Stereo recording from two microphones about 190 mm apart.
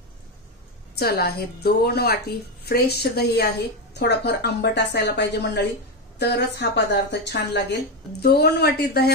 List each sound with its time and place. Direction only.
0.9 s a woman's voice: 55° left (ahead or behind)